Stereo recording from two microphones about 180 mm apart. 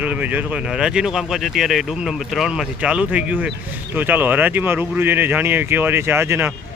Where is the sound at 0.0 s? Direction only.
10° right (ahead or behind).